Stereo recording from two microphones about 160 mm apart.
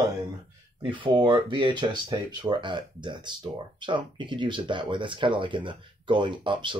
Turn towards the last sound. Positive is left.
turn(degrees=-30)  # may be behind; listen again after turning